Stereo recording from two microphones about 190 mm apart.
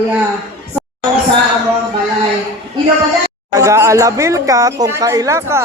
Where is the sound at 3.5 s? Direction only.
15° right (ahead or behind).